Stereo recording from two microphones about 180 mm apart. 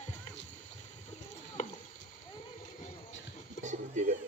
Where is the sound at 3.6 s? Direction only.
45° right (ahead or behind).